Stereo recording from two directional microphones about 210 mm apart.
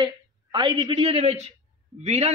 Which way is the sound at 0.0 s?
25° right (ahead or behind).